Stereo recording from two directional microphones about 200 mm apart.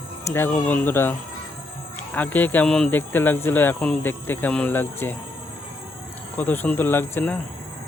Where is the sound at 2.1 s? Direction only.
10° left (ahead or behind).